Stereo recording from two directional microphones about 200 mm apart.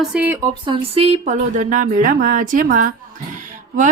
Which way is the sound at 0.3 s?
20° right (ahead or behind).